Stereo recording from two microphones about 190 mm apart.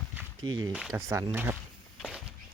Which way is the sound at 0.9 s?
15° right (ahead or behind).